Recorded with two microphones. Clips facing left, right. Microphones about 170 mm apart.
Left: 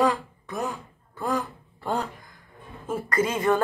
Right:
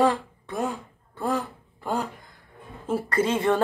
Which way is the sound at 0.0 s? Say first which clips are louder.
Right 1 dB; 30° right (ahead or behind).